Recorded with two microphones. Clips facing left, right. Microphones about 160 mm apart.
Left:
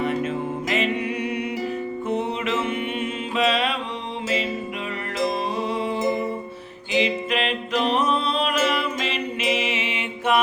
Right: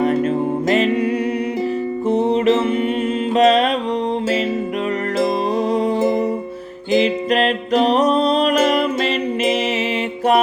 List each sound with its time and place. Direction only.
0.0 s music: 40° right (ahead or behind)
5.2 s music: 40° right (ahead or behind)